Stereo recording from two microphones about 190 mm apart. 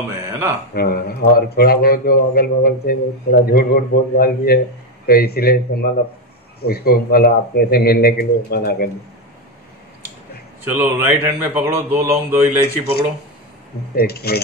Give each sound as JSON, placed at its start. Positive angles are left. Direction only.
{"t": 0.2, "sound": "a sound", "side_deg": -15}
{"t": 0.7, "sound": "a man's voice", "side_deg": 55}
{"t": 10.7, "sound": "speech", "side_deg": -10}
{"t": 13.9, "sound": "a man's voice", "side_deg": 55}